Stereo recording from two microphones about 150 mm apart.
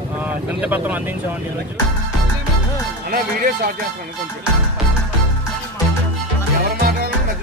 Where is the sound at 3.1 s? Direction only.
75° right (ahead or behind).